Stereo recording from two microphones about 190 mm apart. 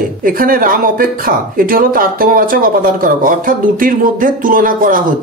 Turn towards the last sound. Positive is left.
turn(degrees=-45)  # may be behind; listen again after turning